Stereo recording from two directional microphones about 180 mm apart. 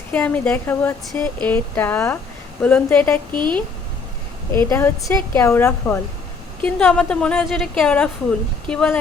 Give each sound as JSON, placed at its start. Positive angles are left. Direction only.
{"t": 0.1, "sound": "a woman's voice", "side_deg": 10}
{"t": 3.3, "sound": "speech", "side_deg": -25}
{"t": 4.5, "sound": "a woman's voice", "side_deg": 15}